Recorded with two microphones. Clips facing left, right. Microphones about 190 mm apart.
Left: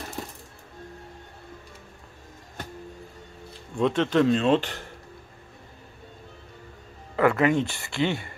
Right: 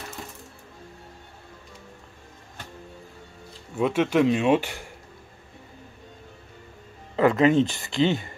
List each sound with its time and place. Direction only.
3.7 s speech: 5° right (ahead or behind)
7.2 s speech: 20° right (ahead or behind)